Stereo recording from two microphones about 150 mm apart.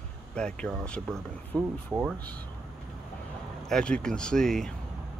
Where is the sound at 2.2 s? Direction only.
10° left (ahead or behind).